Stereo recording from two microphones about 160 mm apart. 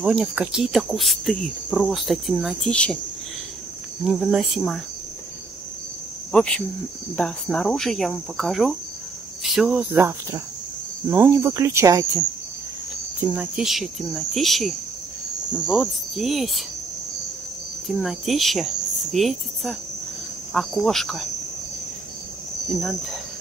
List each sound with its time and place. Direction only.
0.0 s cricket: 5° right (ahead or behind)
4.0 s cricket: 5° right (ahead or behind)
6.3 s cricket: 5° left (ahead or behind)
9.4 s speech: 5° right (ahead or behind); by 12.1 s 20° right (ahead or behind)
13.3 s cricket: 5° right (ahead or behind)
17.9 s cricket: centre (ahead or behind)
22.7 s cricket: centre (ahead or behind)